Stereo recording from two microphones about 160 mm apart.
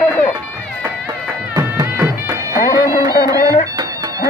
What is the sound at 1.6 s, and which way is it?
Music, 20° right (ahead or behind).